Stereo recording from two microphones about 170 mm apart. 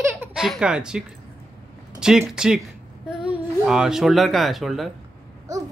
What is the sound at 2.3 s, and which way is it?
Speech, 5° right (ahead or behind).